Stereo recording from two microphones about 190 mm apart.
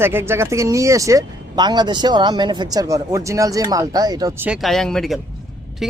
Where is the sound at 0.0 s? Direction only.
15° right (ahead or behind).